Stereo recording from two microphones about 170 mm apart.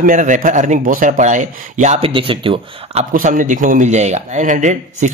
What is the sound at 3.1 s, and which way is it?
Speech, 55° right (ahead or behind).